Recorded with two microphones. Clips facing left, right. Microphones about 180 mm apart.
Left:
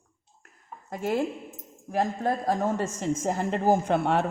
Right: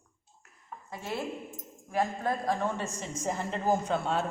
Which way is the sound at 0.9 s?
45° left (ahead or behind).